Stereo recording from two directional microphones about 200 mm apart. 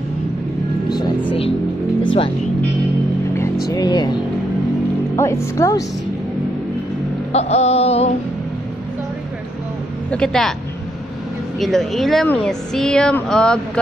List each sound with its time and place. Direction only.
0.8 s music: 20° left (ahead or behind)
3.7 s speech: 20° left (ahead or behind)
7.3 s music: 30° left (ahead or behind)
10.1 s speech: 5° left (ahead or behind)
11.6 s speech: centre (ahead or behind)